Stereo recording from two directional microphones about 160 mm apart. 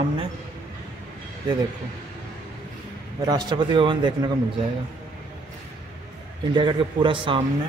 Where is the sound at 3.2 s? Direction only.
25° right (ahead or behind).